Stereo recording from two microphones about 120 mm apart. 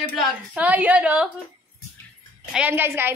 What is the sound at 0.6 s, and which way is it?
Speech, 10° right (ahead or behind).